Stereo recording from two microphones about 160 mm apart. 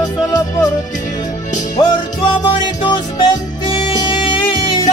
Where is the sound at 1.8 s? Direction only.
30° left (ahead or behind).